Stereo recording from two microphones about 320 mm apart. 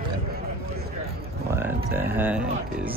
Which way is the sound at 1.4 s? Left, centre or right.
Centre.